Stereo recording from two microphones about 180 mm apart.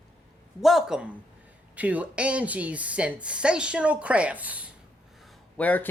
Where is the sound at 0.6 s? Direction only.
Centre (ahead or behind).